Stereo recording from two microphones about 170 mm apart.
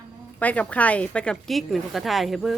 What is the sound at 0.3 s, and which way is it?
Speech, 10° left (ahead or behind).